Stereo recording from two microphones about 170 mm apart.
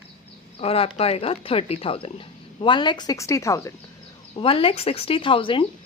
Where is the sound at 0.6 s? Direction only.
35° left (ahead or behind); by 3.7 s 15° left (ahead or behind).